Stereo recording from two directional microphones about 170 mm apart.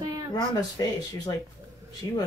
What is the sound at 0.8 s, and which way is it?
Speech, 20° left (ahead or behind).